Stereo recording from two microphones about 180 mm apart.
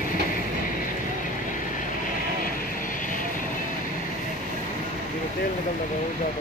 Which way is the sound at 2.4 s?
50° left (ahead or behind).